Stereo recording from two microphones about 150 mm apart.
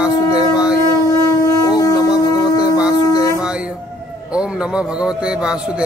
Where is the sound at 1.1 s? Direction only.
25° left (ahead or behind).